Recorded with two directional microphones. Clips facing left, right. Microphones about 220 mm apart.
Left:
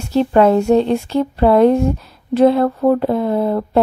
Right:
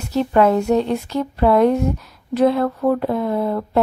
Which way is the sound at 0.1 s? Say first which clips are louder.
Left 3 dB; 30° left (ahead or behind).